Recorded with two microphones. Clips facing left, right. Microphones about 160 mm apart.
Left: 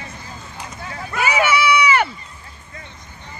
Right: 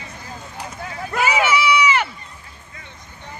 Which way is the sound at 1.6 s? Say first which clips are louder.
Left 1 dB; 60° left (ahead or behind).